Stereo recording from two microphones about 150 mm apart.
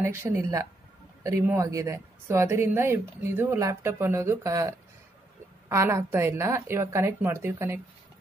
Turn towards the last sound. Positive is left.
turn(degrees=-15)  # may be behind; listen again after turning